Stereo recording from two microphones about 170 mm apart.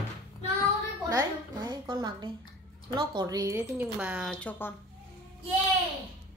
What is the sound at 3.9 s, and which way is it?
Speech, 5° right (ahead or behind).